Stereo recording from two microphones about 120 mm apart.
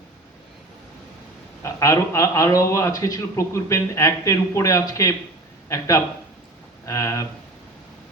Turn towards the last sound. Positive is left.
turn(degrees=25)  # may be behind; listen again after turning